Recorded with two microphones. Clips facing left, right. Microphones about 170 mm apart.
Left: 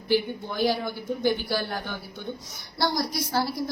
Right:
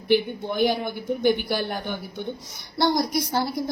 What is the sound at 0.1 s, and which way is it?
A woman's voice, 20° right (ahead or behind).